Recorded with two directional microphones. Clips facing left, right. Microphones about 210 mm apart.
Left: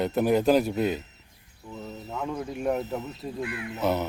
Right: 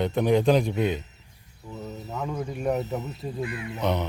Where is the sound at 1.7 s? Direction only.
10° right (ahead or behind).